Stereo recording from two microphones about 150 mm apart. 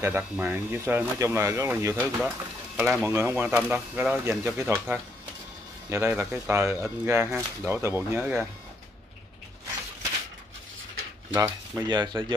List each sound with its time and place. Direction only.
0.0 s speech: 15° right (ahead or behind)
2.8 s speech: centre (ahead or behind)
3.1 s speech: 15° right (ahead or behind)
11.3 s speech: 10° right (ahead or behind)
11.9 s speech: 30° right (ahead or behind)